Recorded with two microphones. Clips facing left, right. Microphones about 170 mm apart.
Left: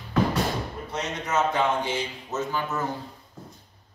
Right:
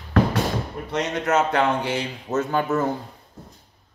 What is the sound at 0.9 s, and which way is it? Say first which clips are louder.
A man's voice: right 6 dB; 70° right (ahead or behind).